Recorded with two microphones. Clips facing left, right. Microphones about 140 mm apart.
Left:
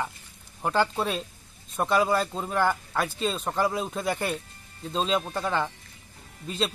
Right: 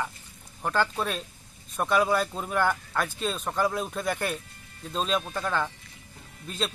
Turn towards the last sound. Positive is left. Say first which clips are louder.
# left 3 dB
turn(degrees=0)  # may be behind; listen again after turning